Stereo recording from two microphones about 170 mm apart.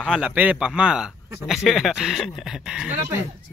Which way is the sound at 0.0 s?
5° right (ahead or behind).